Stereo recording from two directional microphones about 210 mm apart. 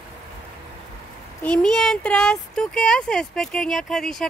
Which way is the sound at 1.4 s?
5° left (ahead or behind).